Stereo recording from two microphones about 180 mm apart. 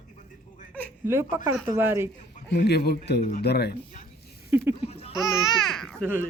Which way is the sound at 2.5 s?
65° left (ahead or behind).